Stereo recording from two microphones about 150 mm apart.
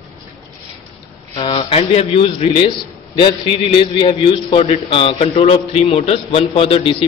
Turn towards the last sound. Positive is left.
turn(degrees=40)  # may be behind; listen again after turning